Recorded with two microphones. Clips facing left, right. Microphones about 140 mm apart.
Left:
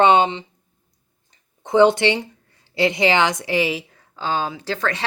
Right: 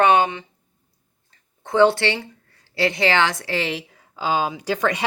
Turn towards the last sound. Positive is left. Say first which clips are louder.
# right 2 dB
turn(degrees=-15)  # may be behind; listen again after turning